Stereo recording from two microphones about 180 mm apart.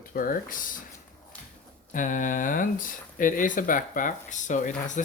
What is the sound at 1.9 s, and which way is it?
Speech, 45° left (ahead or behind).